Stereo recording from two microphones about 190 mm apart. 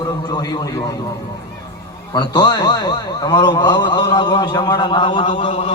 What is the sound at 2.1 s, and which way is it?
A man's voice, 20° left (ahead or behind).